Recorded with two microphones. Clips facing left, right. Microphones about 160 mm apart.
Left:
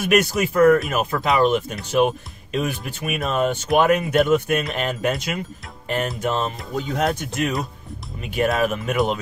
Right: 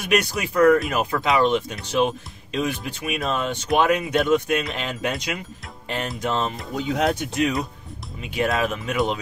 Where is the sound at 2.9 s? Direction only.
50° left (ahead or behind).